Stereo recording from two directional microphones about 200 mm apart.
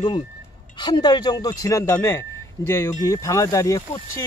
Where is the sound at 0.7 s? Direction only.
20° left (ahead or behind).